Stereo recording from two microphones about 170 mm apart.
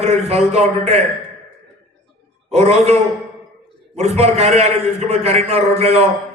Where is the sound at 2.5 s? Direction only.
40° right (ahead or behind).